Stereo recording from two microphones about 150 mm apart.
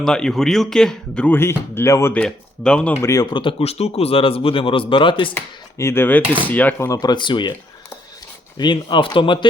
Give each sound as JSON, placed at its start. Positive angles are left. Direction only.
{"t": 0.0, "sound": "speech", "side_deg": 5}
{"t": 2.1, "sound": "speech", "side_deg": 5}
{"t": 5.3, "sound": "speech", "side_deg": 15}
{"t": 8.5, "sound": "speech", "side_deg": 30}